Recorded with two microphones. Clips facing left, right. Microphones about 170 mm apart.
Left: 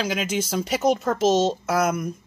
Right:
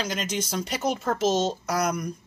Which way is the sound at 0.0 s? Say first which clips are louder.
Left 4 dB; 5° left (ahead or behind).